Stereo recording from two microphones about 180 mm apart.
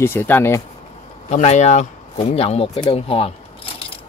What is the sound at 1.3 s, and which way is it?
Speech, 40° left (ahead or behind).